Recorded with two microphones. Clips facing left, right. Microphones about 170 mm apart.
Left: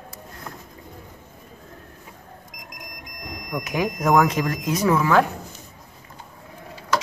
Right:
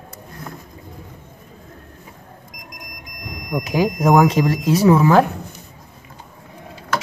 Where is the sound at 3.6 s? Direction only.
30° right (ahead or behind).